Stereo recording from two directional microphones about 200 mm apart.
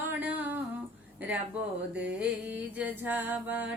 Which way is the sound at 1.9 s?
5° right (ahead or behind).